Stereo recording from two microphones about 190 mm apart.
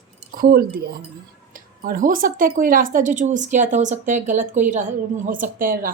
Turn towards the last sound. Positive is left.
turn(degrees=-45)  # may be behind; listen again after turning